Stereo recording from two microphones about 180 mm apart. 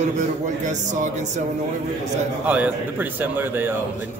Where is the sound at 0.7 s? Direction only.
45° right (ahead or behind).